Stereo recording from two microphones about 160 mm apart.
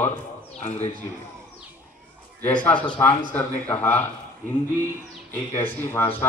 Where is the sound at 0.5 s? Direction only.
45° left (ahead or behind).